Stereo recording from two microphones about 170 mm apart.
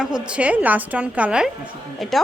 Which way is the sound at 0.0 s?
5° right (ahead or behind).